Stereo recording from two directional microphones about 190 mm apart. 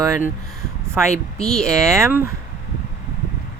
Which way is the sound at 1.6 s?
15° right (ahead or behind).